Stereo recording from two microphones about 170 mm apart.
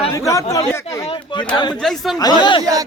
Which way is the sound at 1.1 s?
25° left (ahead or behind).